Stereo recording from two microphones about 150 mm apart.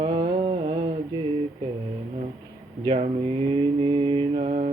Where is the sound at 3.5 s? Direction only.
35° right (ahead or behind).